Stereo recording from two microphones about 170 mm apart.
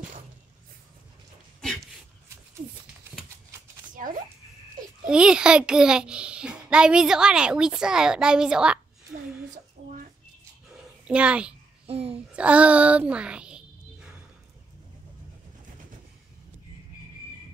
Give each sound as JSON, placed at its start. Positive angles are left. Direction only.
{"t": 3.9, "sound": "a sound", "side_deg": -50}
{"t": 5.0, "sound": "a child's voice", "side_deg": -5}
{"t": 9.8, "sound": "bird", "side_deg": -35}
{"t": 11.1, "sound": "a child's voice", "side_deg": -5}
{"t": 11.8, "sound": "a sound", "side_deg": -35}
{"t": 12.4, "sound": "a child's voice", "side_deg": -5}